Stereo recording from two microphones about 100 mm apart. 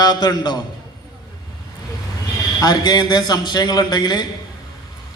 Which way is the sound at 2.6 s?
40° left (ahead or behind).